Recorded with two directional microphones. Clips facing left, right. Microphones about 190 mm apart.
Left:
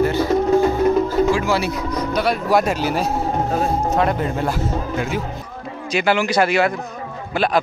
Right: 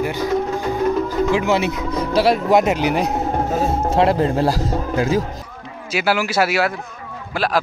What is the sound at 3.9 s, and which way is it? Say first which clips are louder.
Speech: right 3 dB; 30° right (ahead or behind).